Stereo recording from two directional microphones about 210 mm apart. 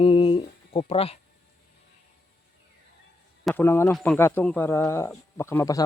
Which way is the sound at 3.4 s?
10° left (ahead or behind).